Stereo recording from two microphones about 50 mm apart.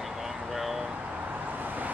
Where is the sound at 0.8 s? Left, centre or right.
Centre.